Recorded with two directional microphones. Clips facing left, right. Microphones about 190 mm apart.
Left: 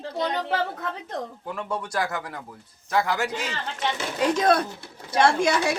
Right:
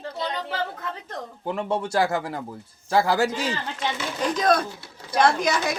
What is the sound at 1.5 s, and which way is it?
A man's voice, 25° right (ahead or behind).